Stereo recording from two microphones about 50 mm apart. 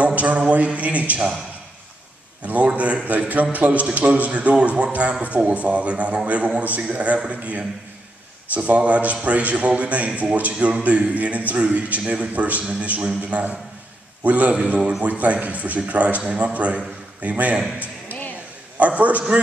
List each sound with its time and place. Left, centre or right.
0.0 s mantra: right
0.7 s a man's voice: right
2.4 s a man's voice: right
18.8 s a man's voice: right